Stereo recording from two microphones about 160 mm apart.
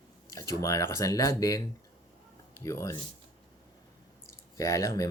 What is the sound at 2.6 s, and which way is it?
Speech, 20° left (ahead or behind).